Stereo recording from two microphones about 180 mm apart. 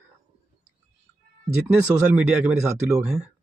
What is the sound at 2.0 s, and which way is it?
Speech, 10° right (ahead or behind).